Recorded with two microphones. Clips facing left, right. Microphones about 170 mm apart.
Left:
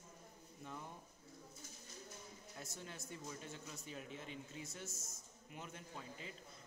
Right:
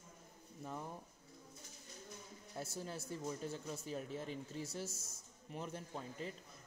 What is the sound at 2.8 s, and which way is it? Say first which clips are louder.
Speech: right 6 dB; 35° right (ahead or behind).